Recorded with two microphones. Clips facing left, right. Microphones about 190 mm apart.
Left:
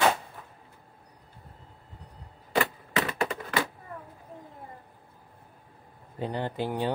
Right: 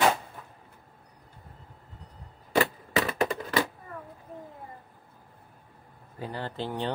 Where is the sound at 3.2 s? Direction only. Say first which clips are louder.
Right 2 dB; 40° right (ahead or behind).